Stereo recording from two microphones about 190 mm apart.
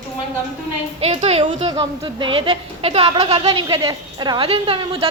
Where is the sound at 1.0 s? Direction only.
35° right (ahead or behind).